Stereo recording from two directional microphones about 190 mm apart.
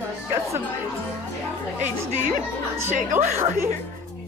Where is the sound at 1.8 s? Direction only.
45° right (ahead or behind).